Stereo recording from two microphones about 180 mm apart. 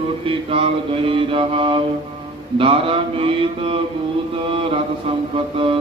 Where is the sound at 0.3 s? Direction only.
30° right (ahead or behind).